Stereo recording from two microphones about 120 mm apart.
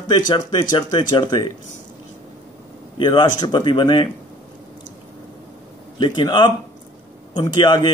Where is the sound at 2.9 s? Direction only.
40° left (ahead or behind).